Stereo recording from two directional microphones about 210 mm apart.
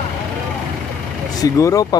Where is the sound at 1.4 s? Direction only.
15° left (ahead or behind).